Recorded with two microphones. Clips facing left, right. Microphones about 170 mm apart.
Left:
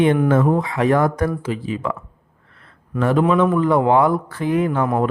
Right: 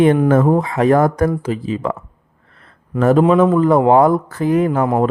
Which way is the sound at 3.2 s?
35° right (ahead or behind).